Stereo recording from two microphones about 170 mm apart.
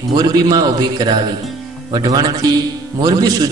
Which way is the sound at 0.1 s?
25° right (ahead or behind).